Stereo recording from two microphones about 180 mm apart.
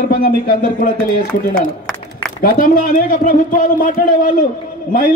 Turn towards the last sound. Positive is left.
turn(degrees=50)  # may be behind; listen again after turning